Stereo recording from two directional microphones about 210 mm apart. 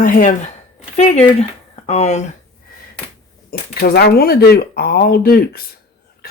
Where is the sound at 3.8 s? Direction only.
50° left (ahead or behind).